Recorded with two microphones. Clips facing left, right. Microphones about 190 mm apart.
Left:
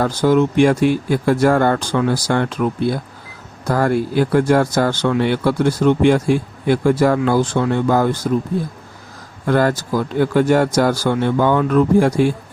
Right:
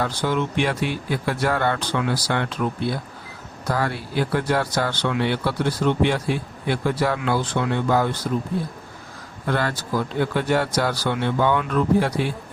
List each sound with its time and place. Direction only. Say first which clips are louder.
0.0 s speech: left 9 dB; 45° left (ahead or behind)
9.5 s speech: left 7 dB; 45° left (ahead or behind)